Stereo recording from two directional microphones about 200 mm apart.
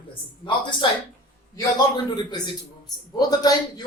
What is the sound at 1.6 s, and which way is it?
A man's voice, 20° left (ahead or behind).